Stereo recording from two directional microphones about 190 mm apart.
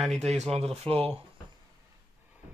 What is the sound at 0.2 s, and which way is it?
Speech, 35° right (ahead or behind).